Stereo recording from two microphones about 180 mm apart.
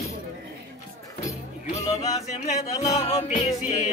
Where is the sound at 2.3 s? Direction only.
40° left (ahead or behind).